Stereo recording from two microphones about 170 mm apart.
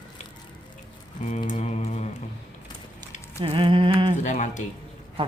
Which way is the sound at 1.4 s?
40° left (ahead or behind).